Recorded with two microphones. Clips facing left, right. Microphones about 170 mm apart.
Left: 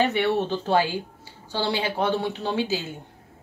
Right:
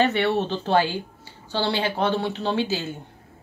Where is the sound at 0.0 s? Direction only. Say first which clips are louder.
Right 1 dB; 10° left (ahead or behind).